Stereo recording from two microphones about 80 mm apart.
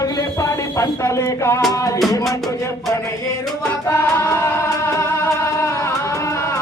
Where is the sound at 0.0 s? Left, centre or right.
Left.